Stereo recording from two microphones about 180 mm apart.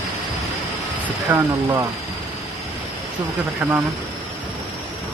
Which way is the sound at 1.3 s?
15° right (ahead or behind).